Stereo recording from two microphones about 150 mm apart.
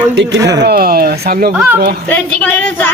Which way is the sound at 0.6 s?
90° right.